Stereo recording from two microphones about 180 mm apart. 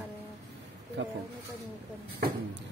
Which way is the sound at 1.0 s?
90° right.